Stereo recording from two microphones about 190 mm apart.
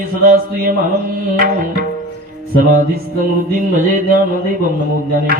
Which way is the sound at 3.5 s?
45° right (ahead or behind).